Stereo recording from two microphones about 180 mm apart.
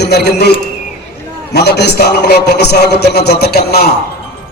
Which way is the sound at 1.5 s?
65° left (ahead or behind).